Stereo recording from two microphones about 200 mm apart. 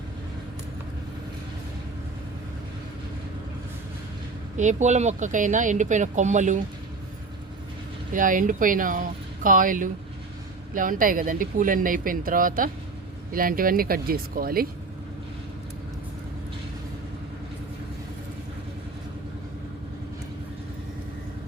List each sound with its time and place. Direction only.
4.5 s speech: 35° right (ahead or behind)
8.1 s speech: 40° right (ahead or behind)